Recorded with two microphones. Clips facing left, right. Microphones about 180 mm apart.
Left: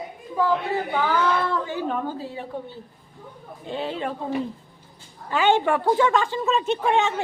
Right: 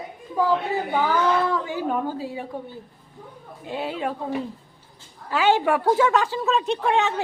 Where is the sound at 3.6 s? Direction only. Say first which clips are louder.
Even; 10° right (ahead or behind).